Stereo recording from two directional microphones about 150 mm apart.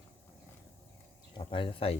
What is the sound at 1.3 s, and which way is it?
Speech, 35° left (ahead or behind).